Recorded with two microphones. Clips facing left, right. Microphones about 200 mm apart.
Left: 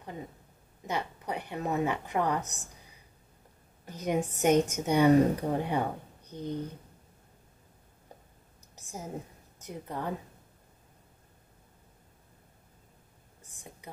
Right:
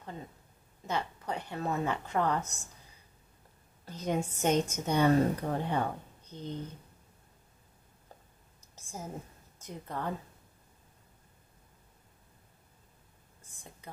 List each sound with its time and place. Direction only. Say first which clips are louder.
0.8 s speech: left 1 dB; 15° left (ahead or behind)
3.8 s a woman's voice: left 2 dB; 15° left (ahead or behind)
9.7 s speech: left 1 dB; 15° left (ahead or behind)
13.4 s a sound: left 3 dB; 15° left (ahead or behind)